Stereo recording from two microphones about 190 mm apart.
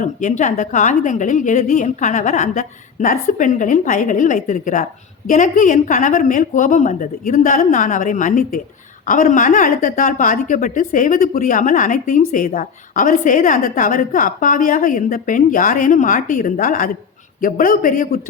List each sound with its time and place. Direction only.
0.0 s a woman's voice: 40° left (ahead or behind)